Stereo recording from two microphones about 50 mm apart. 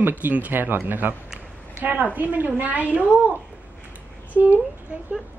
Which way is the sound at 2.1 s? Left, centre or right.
Right.